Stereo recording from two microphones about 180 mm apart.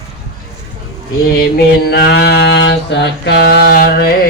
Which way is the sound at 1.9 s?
60° left (ahead or behind).